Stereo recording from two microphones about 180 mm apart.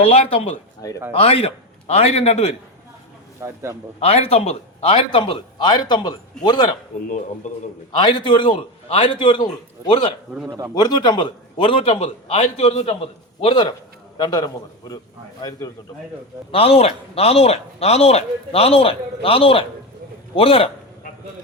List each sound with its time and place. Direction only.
0.0 s a man's voice: 30° left (ahead or behind)
3.4 s a man's voice: 15° right (ahead or behind)
4.0 s a man's voice: 35° left (ahead or behind)
7.9 s a man's voice: 25° left (ahead or behind)
10.3 s a man's voice: centre (ahead or behind)
10.8 s a man's voice: 25° left (ahead or behind)